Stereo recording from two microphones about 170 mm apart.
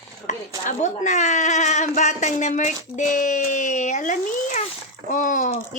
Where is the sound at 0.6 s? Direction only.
45° left (ahead or behind).